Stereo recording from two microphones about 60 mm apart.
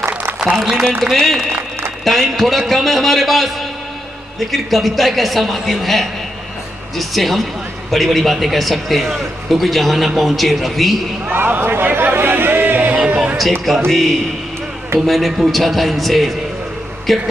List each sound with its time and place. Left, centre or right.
1.1 s a man's voice: centre
11.2 s speech: right
13.1 s a sound: right
13.7 s a man's voice: centre